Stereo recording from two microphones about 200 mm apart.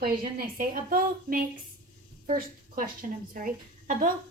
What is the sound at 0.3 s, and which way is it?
A woman's voice, 45° right (ahead or behind).